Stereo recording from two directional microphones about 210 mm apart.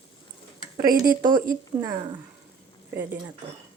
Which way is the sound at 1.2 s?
40° right (ahead or behind).